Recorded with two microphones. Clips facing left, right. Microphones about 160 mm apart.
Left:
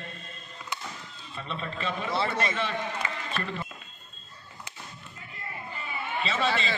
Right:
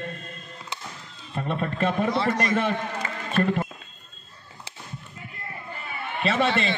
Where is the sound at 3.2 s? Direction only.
50° right (ahead or behind).